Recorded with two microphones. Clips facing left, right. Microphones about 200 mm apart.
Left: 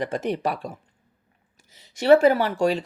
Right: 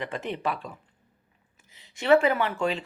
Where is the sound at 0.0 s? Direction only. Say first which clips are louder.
Left 5 dB; 40° left (ahead or behind).